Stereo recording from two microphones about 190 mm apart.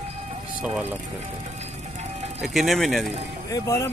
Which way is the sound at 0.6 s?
5° right (ahead or behind).